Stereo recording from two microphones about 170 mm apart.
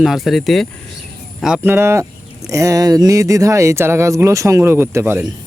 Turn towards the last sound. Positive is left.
turn(degrees=-15)  # may be behind; listen again after turning